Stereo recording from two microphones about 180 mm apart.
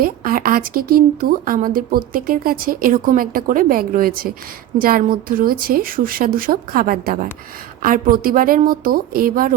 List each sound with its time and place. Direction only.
0.0 s speech: 50° right (ahead or behind)